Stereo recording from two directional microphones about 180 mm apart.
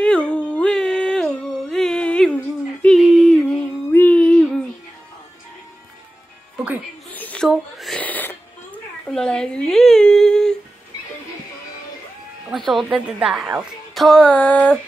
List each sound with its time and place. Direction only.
0.0 s a sound: 5° left (ahead or behind)
7.1 s wheeze: 10° left (ahead or behind)
9.0 s humming: 5° left (ahead or behind)
12.4 s a woman's voice: centre (ahead or behind)